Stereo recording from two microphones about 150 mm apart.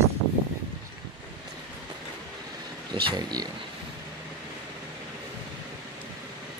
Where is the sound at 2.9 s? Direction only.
30° right (ahead or behind).